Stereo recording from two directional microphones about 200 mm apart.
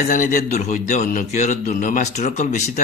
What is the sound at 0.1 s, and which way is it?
A man's voice, 40° left (ahead or behind).